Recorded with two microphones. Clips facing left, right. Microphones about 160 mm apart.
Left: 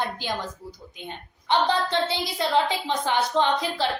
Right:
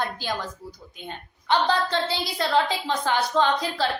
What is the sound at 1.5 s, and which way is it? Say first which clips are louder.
A woman's voice: even; 20° left (ahead or behind).